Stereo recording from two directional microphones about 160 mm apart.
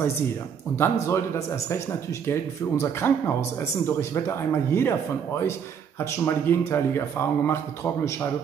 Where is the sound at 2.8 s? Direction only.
15° left (ahead or behind).